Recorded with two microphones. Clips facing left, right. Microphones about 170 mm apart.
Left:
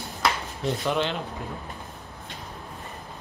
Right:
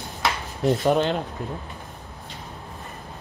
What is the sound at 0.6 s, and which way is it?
Speech, 45° right (ahead or behind).